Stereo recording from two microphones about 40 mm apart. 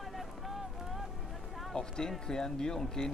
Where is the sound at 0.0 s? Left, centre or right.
Centre.